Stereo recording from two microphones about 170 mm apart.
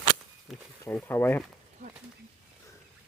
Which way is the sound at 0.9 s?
10° left (ahead or behind).